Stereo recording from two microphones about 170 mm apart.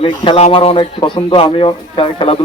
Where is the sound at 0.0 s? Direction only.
35° left (ahead or behind).